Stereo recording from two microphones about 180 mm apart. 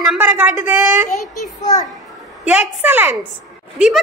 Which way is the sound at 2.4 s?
5° right (ahead or behind).